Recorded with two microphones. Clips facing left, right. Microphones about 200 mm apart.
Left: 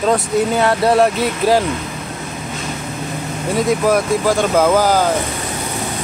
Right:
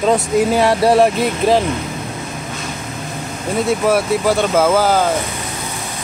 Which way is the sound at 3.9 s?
10° right (ahead or behind).